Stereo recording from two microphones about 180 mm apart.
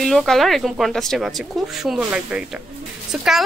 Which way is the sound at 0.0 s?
Centre (ahead or behind).